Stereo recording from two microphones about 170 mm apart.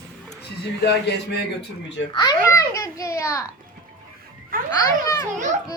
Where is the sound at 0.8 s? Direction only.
85° left.